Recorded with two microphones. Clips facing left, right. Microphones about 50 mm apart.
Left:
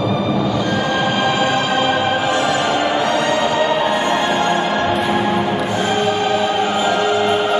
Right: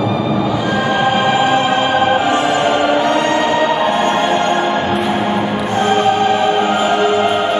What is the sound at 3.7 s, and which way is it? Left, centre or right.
Music, centre.